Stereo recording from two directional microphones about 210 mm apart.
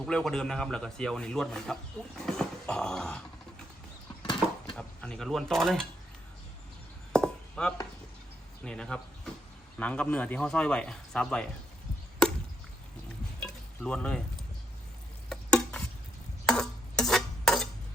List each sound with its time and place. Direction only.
0.0 s speech: 5° left (ahead or behind)
4.2 s a sound: 20° left (ahead or behind)
4.7 s speech: 5° left (ahead or behind)
7.1 s a sound: 5° left (ahead or behind)
8.6 s speech: 5° left (ahead or behind)
13.4 s stir: 5° left (ahead or behind)
15.3 s stir: 5° left (ahead or behind)